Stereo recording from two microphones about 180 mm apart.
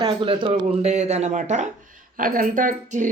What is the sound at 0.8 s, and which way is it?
A woman's voice, 40° right (ahead or behind).